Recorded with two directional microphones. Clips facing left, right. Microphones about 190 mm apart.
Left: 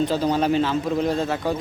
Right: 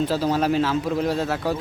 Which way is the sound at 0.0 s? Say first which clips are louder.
Left 1 dB; 5° right (ahead or behind).